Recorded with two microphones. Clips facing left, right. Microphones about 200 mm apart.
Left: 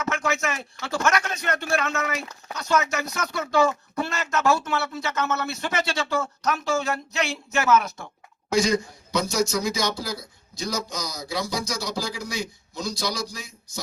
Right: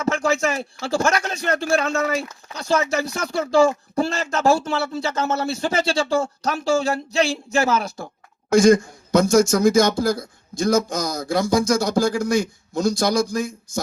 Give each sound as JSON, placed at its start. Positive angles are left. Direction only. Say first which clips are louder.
{"t": 0.0, "sound": "speech", "louder": "right 6 dB", "side_deg": -30}
{"t": 8.4, "sound": "a man's voice", "louder": "right 8 dB", "side_deg": -50}